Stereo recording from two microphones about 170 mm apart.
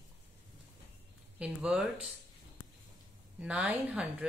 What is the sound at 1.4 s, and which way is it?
Speech, 5° right (ahead or behind).